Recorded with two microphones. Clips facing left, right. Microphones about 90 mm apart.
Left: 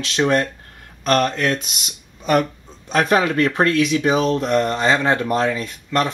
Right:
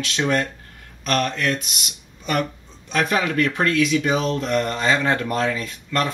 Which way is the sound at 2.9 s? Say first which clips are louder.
Left 4 dB; 35° left (ahead or behind).